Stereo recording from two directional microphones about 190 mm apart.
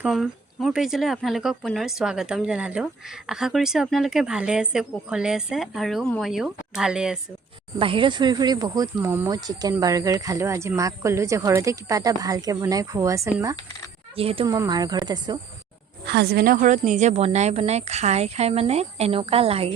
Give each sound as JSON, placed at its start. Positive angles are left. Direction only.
{"t": 0.0, "sound": "speech", "side_deg": 0}
{"t": 7.8, "sound": "speech", "side_deg": -25}
{"t": 14.2, "sound": "a woman's voice", "side_deg": -30}
{"t": 14.4, "sound": "speech", "side_deg": -20}
{"t": 16.0, "sound": "a woman's voice", "side_deg": -60}